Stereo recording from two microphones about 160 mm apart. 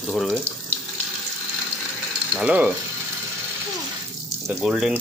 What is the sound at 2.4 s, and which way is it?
Speech, 10° right (ahead or behind).